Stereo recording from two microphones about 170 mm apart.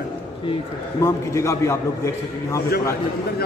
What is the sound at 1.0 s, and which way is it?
A man's voice, 15° left (ahead or behind).